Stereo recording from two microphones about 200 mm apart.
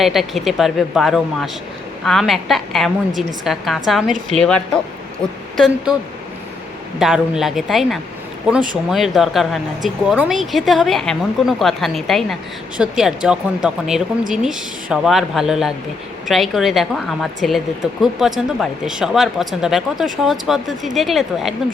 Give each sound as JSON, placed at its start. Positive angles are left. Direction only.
{"t": 0.0, "sound": "a woman's voice", "side_deg": 0}
{"t": 7.0, "sound": "a woman's voice", "side_deg": 0}